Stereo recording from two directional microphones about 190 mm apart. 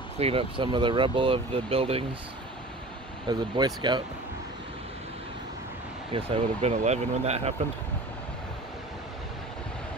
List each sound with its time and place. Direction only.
0.2 s speech: 30° right (ahead or behind)
3.3 s speech: 20° right (ahead or behind)
6.1 s speech: 35° right (ahead or behind)